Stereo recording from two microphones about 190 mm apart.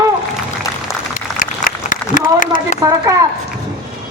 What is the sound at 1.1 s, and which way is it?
Applause, 45° left (ahead or behind).